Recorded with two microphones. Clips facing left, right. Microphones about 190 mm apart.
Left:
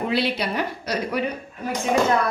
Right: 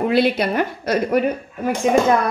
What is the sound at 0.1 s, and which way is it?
A woman's voice, 50° right (ahead or behind).